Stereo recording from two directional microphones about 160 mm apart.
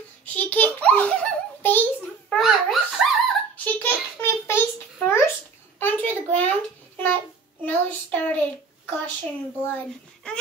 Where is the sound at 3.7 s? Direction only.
15° left (ahead or behind).